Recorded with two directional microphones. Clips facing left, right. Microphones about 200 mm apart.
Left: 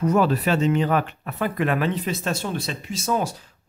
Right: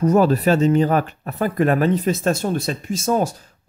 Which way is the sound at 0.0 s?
40° right (ahead or behind).